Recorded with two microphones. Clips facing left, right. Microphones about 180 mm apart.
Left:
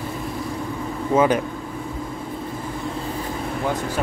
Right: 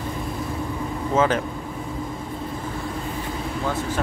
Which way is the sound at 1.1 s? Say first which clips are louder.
Left 3 dB; 15° left (ahead or behind).